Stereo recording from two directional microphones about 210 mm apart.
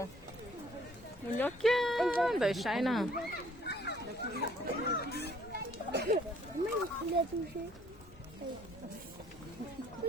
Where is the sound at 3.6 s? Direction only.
50° left (ahead or behind).